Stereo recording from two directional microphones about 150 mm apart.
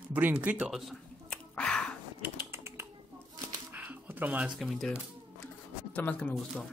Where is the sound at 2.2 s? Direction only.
15° right (ahead or behind).